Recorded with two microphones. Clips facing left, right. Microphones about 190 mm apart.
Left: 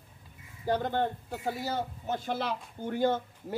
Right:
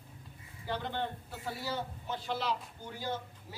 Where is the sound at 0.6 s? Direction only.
45° left (ahead or behind).